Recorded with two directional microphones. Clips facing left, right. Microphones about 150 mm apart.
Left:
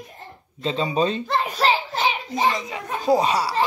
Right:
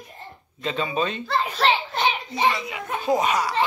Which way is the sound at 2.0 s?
Centre (ahead or behind).